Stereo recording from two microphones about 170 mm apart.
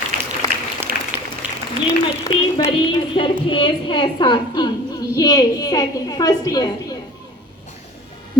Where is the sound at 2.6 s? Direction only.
30° left (ahead or behind).